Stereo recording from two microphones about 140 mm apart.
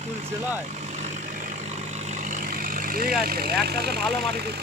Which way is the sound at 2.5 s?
90° right.